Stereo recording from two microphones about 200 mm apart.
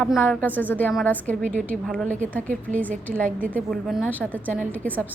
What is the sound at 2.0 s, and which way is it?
Speech, 40° right (ahead or behind).